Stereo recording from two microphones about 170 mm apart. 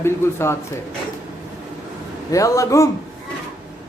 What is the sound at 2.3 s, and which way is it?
Speech, 20° left (ahead or behind).